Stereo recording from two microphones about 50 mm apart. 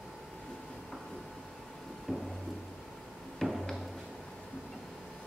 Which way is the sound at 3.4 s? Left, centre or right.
Centre.